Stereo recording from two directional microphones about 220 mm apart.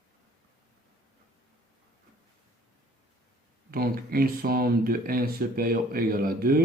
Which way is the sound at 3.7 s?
40° right (ahead or behind).